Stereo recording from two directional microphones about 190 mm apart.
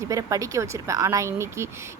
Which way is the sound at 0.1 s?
15° right (ahead or behind).